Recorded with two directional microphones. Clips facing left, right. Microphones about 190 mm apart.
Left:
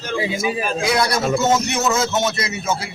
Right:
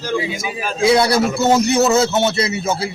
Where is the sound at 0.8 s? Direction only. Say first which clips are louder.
Right 8 dB; 30° right (ahead or behind).